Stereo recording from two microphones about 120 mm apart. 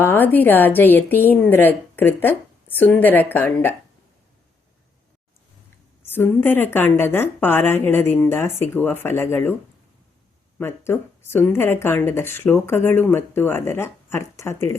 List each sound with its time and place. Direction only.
0.0 s a woman's voice: 15° left (ahead or behind)
6.1 s a woman's voice: 15° left (ahead or behind)
10.6 s speech: 20° left (ahead or behind)